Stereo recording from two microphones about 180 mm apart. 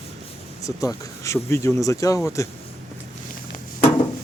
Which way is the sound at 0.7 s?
20° left (ahead or behind).